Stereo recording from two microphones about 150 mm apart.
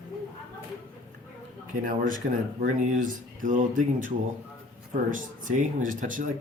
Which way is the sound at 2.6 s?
65° right (ahead or behind).